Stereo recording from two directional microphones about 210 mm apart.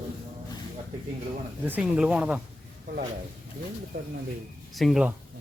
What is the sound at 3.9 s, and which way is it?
Speech, 40° right (ahead or behind).